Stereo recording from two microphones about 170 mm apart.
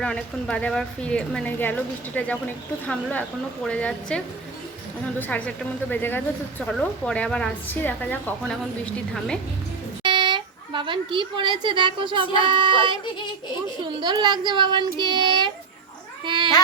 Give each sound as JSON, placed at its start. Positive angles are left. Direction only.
{"t": 0.0, "sound": "a woman's voice", "side_deg": 5}
{"t": 5.3, "sound": "a woman's voice", "side_deg": 10}
{"t": 10.0, "sound": "a sound", "side_deg": -25}
{"t": 12.5, "sound": "speech", "side_deg": -30}